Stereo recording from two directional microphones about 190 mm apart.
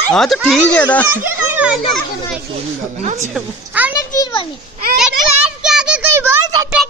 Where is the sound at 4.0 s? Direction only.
20° left (ahead or behind).